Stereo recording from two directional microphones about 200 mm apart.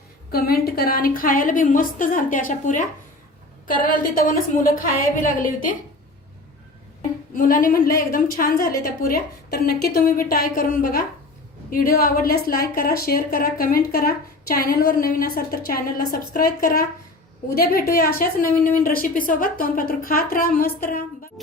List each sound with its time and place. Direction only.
0.3 s a woman's voice: 50° left (ahead or behind)
7.3 s a woman's voice: 45° left (ahead or behind)